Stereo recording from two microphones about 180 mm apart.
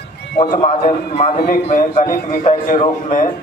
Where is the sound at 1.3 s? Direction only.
60° left (ahead or behind).